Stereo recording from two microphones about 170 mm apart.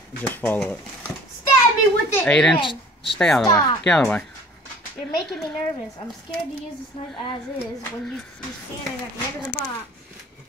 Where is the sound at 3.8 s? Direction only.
5° left (ahead or behind).